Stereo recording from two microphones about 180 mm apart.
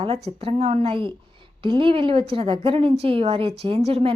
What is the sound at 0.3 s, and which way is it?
A woman's voice, 35° right (ahead or behind).